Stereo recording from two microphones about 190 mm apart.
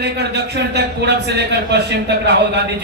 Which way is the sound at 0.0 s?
60° right (ahead or behind).